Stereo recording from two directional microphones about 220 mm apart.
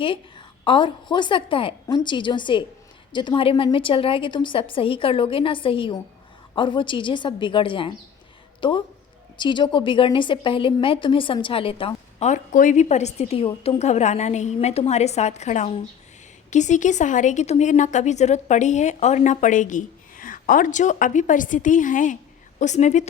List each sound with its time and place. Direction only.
0.6 s a woman's voice: 20° left (ahead or behind)